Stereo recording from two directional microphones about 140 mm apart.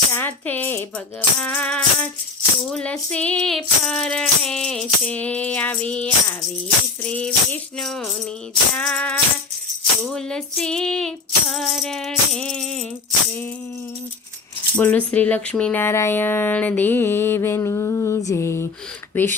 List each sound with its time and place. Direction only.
0.1 s speech: 15° left (ahead or behind)
7.0 s music: 10° left (ahead or behind)
8.7 s speech: 5° left (ahead or behind)
10.0 s music: 5° left (ahead or behind)
14.8 s speech: 10° left (ahead or behind)